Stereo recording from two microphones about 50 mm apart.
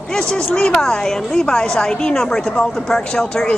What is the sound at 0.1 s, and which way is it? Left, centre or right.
A woman's voice, centre.